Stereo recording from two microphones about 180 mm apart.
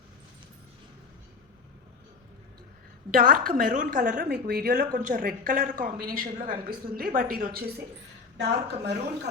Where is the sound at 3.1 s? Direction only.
50° right (ahead or behind).